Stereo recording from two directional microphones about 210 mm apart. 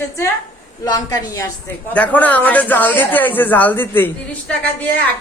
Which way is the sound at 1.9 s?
5° left (ahead or behind).